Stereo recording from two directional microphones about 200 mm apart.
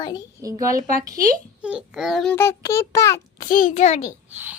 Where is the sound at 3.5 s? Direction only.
40° left (ahead or behind).